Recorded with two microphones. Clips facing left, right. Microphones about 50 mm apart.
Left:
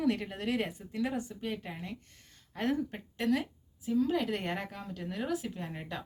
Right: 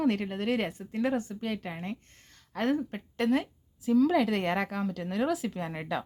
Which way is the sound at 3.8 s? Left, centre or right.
Right.